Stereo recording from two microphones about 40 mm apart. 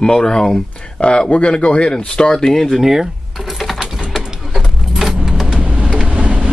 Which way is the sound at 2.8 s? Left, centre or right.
Centre.